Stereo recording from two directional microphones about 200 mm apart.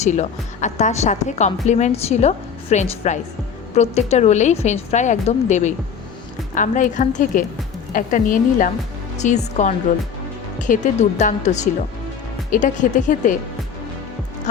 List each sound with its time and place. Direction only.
0.0 s a woman's voice: 35° left (ahead or behind)